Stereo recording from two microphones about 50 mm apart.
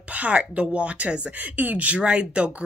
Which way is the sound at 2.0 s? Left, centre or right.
Right.